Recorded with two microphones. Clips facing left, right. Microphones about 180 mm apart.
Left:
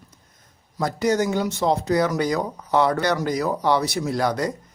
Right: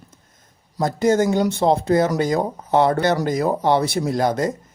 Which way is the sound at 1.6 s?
30° right (ahead or behind).